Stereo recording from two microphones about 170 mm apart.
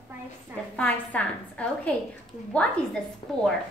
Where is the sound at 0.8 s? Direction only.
10° left (ahead or behind).